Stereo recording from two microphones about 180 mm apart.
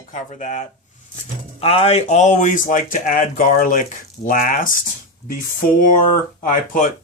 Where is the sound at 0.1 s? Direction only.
40° left (ahead or behind).